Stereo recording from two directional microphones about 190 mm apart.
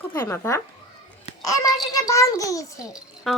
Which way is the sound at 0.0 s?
10° left (ahead or behind).